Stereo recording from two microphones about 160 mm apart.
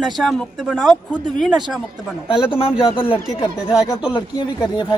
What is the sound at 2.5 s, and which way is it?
Speech, 35° left (ahead or behind).